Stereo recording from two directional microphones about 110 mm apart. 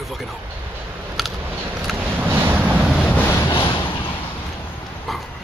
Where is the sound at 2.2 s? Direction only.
15° right (ahead or behind).